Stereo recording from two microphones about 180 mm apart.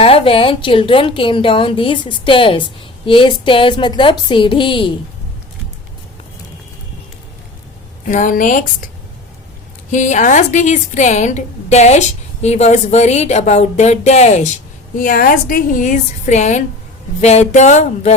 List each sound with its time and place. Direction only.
0.0 s a woman's voice: 30° left (ahead or behind)
8.0 s speech: 45° left (ahead or behind)
9.9 s a woman's voice: 45° left (ahead or behind)